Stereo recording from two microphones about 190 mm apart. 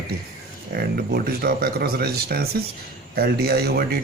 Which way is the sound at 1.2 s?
55° right (ahead or behind).